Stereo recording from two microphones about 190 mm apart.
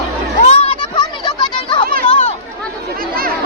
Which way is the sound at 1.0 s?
25° left (ahead or behind).